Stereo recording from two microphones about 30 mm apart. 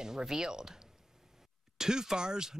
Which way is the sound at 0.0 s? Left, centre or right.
Right.